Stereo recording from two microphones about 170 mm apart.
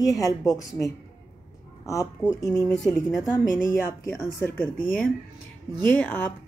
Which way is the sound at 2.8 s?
5° left (ahead or behind).